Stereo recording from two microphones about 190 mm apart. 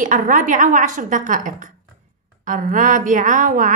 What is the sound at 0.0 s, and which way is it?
A woman's voice, 45° right (ahead or behind).